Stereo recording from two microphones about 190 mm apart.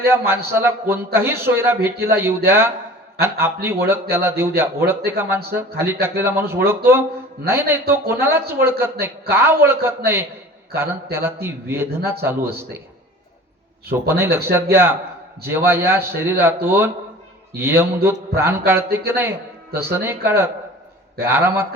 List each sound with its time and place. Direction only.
0.0 s a man's voice: 10° right (ahead or behind)
14.1 s a man's voice: 10° right (ahead or behind)